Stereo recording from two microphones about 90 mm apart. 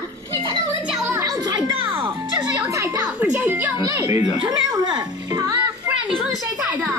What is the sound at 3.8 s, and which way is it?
Speech, 35° right (ahead or behind).